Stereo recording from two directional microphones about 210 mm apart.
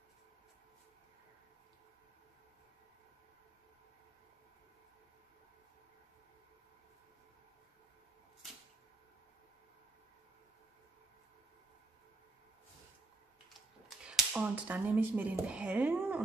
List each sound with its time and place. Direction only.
13.5 s speech: centre (ahead or behind)